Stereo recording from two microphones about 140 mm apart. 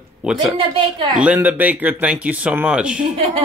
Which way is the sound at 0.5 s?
40° right (ahead or behind).